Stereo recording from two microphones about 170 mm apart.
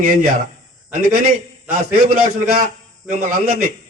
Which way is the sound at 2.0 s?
60° right (ahead or behind).